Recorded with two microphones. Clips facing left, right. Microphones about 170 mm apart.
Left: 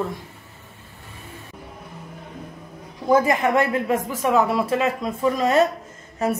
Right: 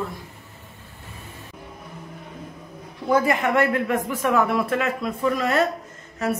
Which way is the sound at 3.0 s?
20° left (ahead or behind).